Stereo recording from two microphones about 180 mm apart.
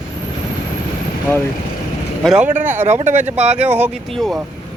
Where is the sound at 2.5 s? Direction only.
45° right (ahead or behind).